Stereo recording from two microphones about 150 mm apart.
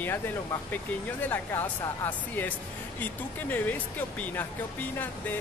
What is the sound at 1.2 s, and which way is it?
Speech, 15° left (ahead or behind).